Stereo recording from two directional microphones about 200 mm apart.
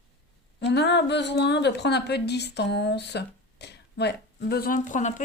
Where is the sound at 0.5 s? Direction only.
60° left (ahead or behind).